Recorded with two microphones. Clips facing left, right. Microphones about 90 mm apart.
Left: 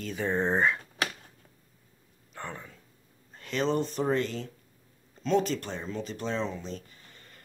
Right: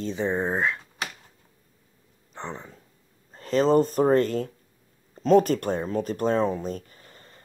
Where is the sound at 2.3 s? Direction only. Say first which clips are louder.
Right 4 dB; 25° right (ahead or behind).